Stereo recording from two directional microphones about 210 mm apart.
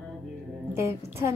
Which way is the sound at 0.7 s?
15° right (ahead or behind).